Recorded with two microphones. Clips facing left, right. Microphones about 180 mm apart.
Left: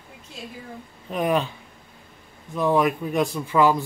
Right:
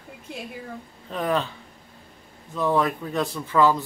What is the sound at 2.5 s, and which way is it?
Speech, 15° left (ahead or behind).